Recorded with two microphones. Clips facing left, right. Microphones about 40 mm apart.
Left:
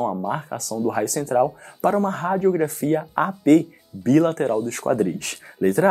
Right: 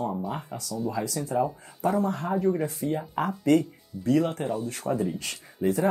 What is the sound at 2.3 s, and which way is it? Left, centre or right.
Speech, left.